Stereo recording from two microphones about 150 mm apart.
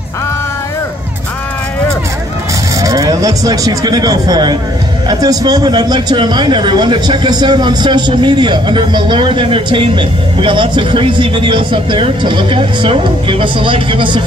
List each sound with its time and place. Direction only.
2.8 s a man's voice: 25° right (ahead or behind)